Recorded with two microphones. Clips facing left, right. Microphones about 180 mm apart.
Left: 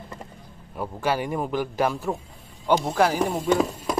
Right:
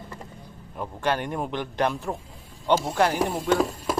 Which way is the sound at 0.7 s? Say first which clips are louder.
Left 1 dB; 10° left (ahead or behind).